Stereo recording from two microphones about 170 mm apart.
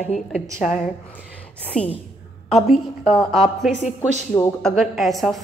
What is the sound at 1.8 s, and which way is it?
Speech, 35° left (ahead or behind).